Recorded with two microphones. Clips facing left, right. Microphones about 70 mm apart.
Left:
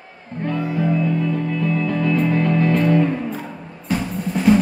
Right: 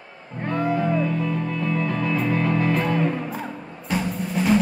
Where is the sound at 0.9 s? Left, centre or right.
Right.